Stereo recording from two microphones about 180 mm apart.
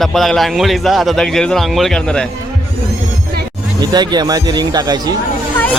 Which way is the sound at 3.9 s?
25° right (ahead or behind).